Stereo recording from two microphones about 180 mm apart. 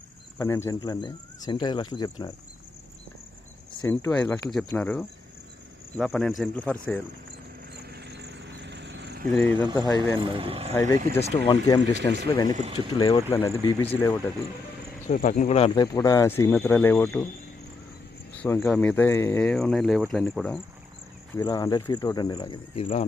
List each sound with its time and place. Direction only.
0.3 s speech: 15° left (ahead or behind)
3.8 s speech: 10° left (ahead or behind)
7.7 s vehicle: 65° right (ahead or behind)
9.4 s speech: 10° left (ahead or behind)
9.7 s speech: 25° left (ahead or behind)
10.2 s speech: 30° right (ahead or behind)
10.8 s speech: 10° left (ahead or behind)
13.3 s speech: 15° left (ahead or behind)
15.0 s speech: 50° left (ahead or behind)
15.7 s speech: 20° left (ahead or behind)
18.4 s speech: 15° left (ahead or behind)
21.3 s speech: 20° left (ahead or behind)
22.7 s speech: 30° left (ahead or behind)